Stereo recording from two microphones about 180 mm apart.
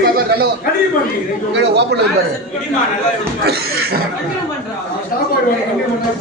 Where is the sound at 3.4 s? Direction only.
60° right (ahead or behind).